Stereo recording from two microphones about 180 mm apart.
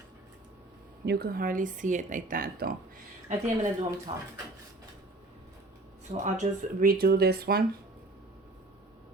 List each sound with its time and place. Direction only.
1.0 s speech: 60° right (ahead or behind)
3.2 s speech: 45° right (ahead or behind)
3.8 s speech: 20° right (ahead or behind)
6.3 s speech: 45° right (ahead or behind)